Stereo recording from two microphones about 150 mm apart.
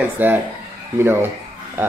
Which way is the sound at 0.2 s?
10° right (ahead or behind).